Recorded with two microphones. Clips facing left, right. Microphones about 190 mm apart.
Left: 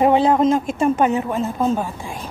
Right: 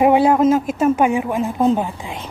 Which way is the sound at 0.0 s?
10° right (ahead or behind).